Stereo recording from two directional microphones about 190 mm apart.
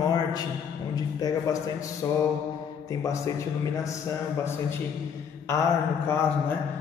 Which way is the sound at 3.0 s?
15° left (ahead or behind).